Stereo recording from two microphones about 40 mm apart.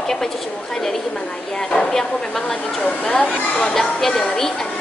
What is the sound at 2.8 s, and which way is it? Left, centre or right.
Speech, left.